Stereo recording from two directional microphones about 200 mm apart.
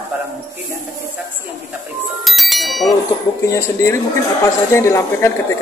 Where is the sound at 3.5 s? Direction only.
15° left (ahead or behind).